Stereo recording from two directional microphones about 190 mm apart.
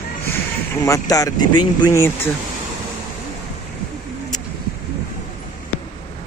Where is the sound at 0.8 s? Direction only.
15° left (ahead or behind).